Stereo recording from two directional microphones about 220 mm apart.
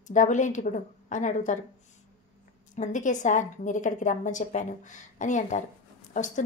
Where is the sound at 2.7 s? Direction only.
35° left (ahead or behind).